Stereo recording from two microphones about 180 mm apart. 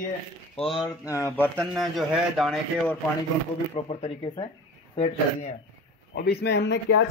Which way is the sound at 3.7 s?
35° left (ahead or behind).